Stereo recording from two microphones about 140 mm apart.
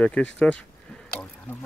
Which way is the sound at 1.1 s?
10° left (ahead or behind).